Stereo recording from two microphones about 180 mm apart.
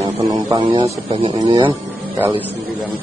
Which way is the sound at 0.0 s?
20° right (ahead or behind).